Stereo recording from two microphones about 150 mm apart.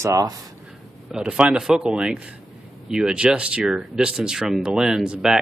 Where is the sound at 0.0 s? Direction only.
25° right (ahead or behind).